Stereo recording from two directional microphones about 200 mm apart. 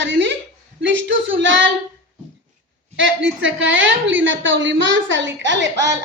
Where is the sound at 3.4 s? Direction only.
70° right (ahead or behind).